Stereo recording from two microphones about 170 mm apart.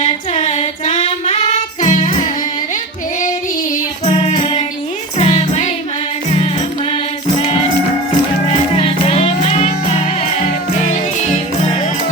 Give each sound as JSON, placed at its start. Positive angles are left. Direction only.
{"t": 0.0, "sound": "female singing", "side_deg": 45}
{"t": 1.5, "sound": "child singing", "side_deg": 45}
{"t": 4.1, "sound": "music", "side_deg": 40}
{"t": 8.4, "sound": "music", "side_deg": 35}